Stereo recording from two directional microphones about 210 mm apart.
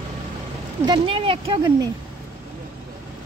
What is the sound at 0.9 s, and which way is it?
Speech, 25° right (ahead or behind).